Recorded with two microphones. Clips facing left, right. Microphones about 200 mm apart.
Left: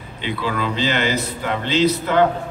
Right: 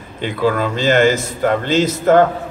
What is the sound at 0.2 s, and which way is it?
A man's voice, 45° right (ahead or behind).